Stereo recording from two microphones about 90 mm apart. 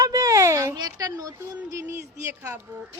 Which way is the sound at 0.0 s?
40° right (ahead or behind).